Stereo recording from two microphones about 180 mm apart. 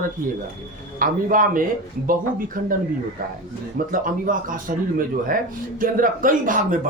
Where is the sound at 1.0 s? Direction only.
50° right (ahead or behind).